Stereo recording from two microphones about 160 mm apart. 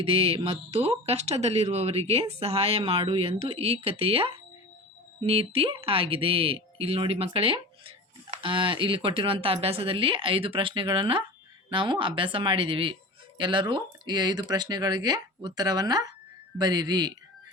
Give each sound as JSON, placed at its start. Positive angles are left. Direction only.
{"t": 0.0, "sound": "speech", "side_deg": -35}